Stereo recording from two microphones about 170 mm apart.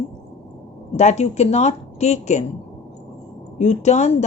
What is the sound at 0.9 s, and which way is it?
Speech, 40° left (ahead or behind).